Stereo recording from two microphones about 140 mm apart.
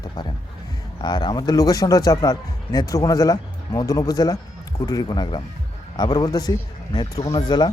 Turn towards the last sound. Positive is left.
turn(degrees=30)  # may be behind; listen again after turning